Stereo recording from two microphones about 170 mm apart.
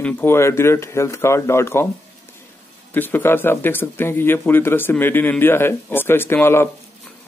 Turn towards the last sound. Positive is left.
turn(degrees=15)  # may be behind; listen again after turning